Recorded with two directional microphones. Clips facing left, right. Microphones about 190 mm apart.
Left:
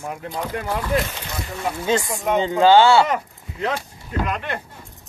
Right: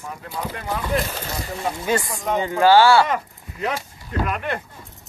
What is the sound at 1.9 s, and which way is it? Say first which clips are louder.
Speech: left 3 dB; 20° left (ahead or behind).